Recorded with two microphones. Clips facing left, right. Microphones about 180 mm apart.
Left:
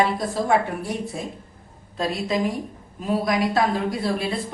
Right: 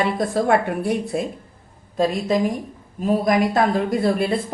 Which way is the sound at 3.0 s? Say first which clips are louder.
Right 4 dB; 50° right (ahead or behind).